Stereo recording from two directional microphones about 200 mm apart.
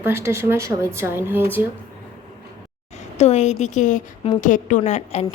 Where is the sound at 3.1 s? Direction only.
35° left (ahead or behind).